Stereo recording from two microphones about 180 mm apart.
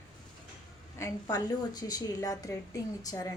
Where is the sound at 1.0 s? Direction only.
20° left (ahead or behind).